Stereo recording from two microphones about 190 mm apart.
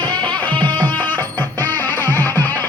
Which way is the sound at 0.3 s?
5° left (ahead or behind).